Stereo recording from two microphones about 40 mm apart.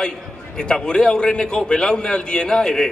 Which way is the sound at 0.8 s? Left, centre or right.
Left.